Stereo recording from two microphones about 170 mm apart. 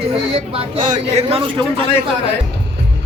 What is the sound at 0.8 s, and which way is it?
Speech, 45° right (ahead or behind).